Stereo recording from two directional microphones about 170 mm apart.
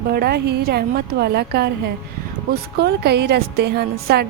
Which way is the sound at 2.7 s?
70° right (ahead or behind).